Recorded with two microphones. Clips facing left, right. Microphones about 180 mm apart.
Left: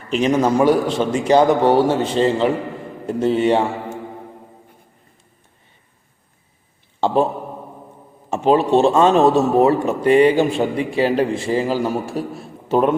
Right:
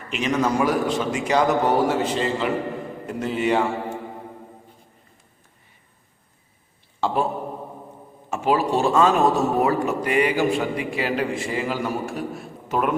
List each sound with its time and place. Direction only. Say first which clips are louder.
0.1 s a man's voice: left 6 dB; 30° left (ahead or behind)
7.0 s a man's voice: left 6 dB; 25° left (ahead or behind)
8.3 s a man's voice: left 6 dB; 25° left (ahead or behind)